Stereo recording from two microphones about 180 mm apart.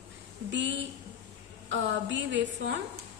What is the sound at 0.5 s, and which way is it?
A woman's voice, 90° right.